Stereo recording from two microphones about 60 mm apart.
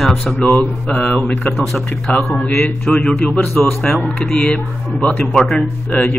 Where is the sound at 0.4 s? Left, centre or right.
Left.